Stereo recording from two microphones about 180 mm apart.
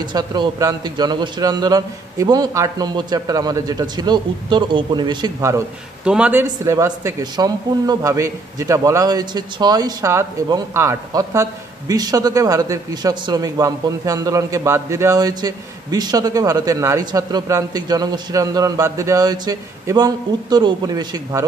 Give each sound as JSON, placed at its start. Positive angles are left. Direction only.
{"t": 0.0, "sound": "speech", "side_deg": -25}
{"t": 6.0, "sound": "speech", "side_deg": -5}